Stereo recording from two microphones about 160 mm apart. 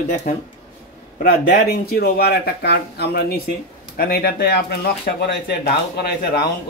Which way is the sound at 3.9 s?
75° left (ahead or behind).